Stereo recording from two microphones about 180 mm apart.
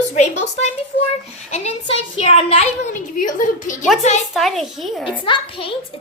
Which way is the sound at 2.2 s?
30° left (ahead or behind).